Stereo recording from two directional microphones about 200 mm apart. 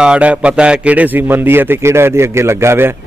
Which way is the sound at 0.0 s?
5° right (ahead or behind).